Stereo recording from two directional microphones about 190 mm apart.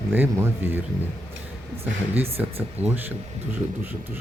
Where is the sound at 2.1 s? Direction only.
30° right (ahead or behind).